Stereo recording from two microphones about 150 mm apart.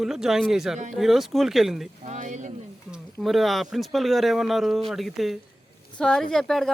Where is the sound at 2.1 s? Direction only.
55° right (ahead or behind).